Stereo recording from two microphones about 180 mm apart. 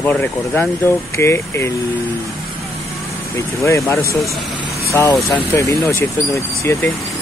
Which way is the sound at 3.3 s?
15° left (ahead or behind).